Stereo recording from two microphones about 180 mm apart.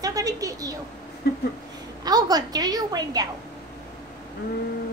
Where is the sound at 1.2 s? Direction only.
65° left (ahead or behind).